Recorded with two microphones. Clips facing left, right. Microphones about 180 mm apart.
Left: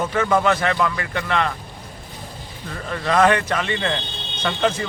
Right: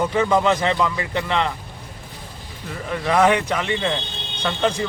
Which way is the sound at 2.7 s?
10° right (ahead or behind).